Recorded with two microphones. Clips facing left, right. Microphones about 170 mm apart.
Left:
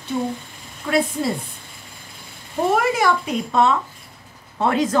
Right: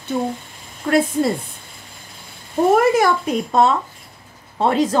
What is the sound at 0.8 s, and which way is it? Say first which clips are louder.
Speech: right 3 dB; 45° right (ahead or behind).